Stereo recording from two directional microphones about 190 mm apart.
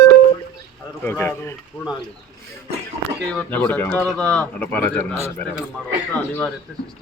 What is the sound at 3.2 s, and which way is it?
Speech, 5° left (ahead or behind).